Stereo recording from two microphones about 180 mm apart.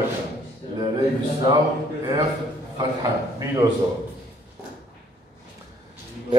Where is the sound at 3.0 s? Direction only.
20° right (ahead or behind).